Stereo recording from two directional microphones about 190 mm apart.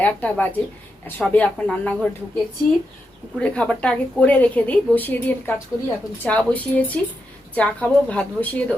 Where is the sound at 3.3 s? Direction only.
5° left (ahead or behind).